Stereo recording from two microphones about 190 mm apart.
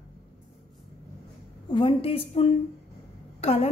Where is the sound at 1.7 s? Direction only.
25° left (ahead or behind).